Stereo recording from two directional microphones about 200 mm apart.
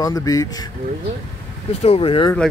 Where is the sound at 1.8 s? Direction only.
30° left (ahead or behind).